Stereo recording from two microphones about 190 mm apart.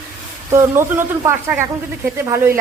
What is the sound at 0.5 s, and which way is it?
Speech, 15° right (ahead or behind).